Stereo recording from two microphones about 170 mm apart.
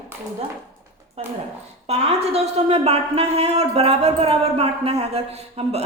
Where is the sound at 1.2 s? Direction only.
40° right (ahead or behind).